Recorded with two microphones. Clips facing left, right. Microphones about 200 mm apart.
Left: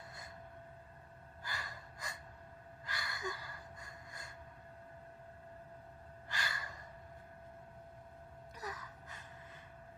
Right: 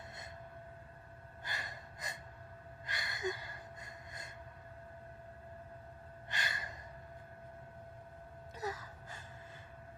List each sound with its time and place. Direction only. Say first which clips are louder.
1.5 s gasp: right 1 dB; 20° right (ahead or behind)
6.2 s gasp: right 1 dB; 20° right (ahead or behind)
8.5 s gasp: right 6 dB; 25° right (ahead or behind)